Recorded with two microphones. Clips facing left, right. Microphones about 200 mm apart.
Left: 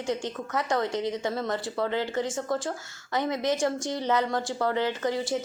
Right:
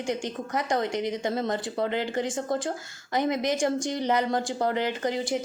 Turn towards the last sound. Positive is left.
turn(degrees=-15)  # may be behind; listen again after turning